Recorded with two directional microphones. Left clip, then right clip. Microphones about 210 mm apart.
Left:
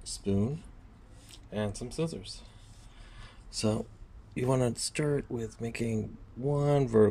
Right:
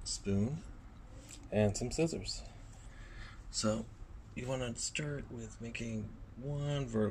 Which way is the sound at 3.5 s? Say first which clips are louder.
Left 4 dB; 15° left (ahead or behind).